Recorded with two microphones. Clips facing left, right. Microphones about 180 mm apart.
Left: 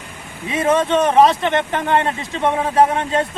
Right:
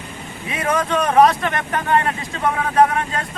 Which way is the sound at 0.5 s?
25° left (ahead or behind).